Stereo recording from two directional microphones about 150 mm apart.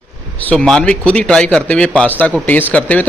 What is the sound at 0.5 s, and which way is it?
A man's voice, 5° left (ahead or behind).